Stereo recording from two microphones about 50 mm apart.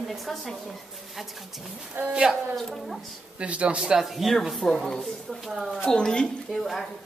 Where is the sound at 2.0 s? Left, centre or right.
Right.